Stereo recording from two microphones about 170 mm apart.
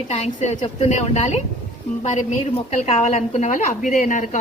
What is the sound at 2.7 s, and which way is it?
A woman's voice, 40° left (ahead or behind).